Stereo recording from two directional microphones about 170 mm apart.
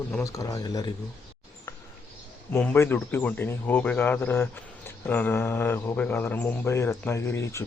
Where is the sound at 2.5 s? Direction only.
10° left (ahead or behind).